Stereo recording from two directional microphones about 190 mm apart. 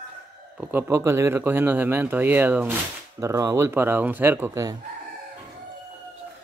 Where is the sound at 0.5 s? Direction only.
10° right (ahead or behind).